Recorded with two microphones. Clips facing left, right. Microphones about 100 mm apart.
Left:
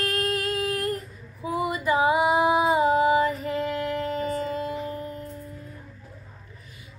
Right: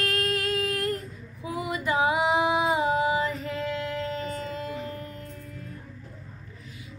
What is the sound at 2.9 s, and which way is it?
Female singing, 45° left (ahead or behind).